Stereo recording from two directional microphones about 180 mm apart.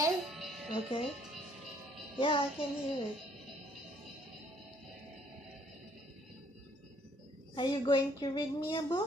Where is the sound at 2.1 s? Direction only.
30° left (ahead or behind).